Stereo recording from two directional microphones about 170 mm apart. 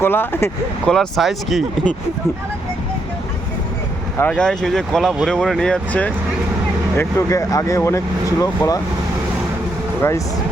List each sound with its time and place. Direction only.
0.0 s speech: 10° left (ahead or behind)
0.9 s speech: centre (ahead or behind)
4.2 s speech: 5° left (ahead or behind)